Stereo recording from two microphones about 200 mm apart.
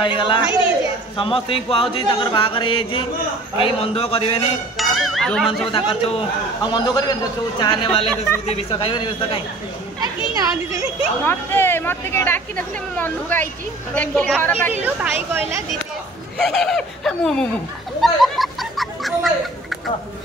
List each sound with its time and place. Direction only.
0.0 s speech: 25° left (ahead or behind)
4.7 s music: centre (ahead or behind)
5.7 s speech: 25° left (ahead or behind)
9.9 s speech: 20° right (ahead or behind)
11.2 s speech: 10° left (ahead or behind)
14.7 s speech: 10° right (ahead or behind)
16.3 s speech: centre (ahead or behind)
18.0 s a sound: centre (ahead or behind)